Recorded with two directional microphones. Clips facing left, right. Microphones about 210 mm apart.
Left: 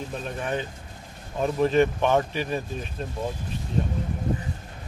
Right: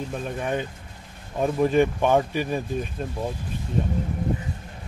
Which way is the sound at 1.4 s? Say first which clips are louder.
Right 1 dB; 10° right (ahead or behind).